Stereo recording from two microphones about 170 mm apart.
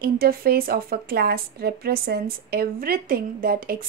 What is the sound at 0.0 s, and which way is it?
Speech, 60° right (ahead or behind).